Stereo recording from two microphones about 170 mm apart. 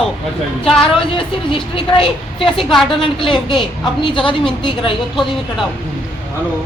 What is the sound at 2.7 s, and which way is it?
Speech, centre (ahead or behind).